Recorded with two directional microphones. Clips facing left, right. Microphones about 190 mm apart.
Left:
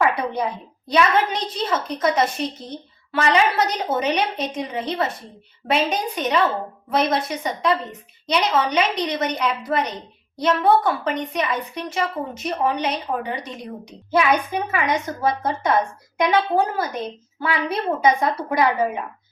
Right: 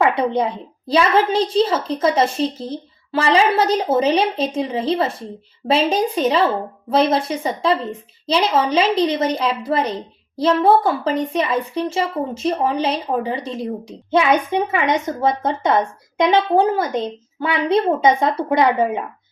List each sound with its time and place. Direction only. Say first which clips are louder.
0.0 s a woman's voice: right 4 dB; 25° right (ahead or behind)